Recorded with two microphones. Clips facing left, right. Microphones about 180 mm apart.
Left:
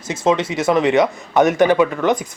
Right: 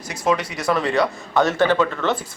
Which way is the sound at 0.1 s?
25° left (ahead or behind).